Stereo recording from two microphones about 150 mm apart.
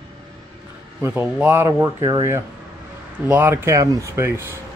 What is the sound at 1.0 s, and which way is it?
Speech, 10° right (ahead or behind).